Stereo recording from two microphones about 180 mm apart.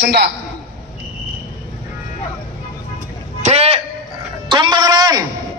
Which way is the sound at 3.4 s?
40° right (ahead or behind).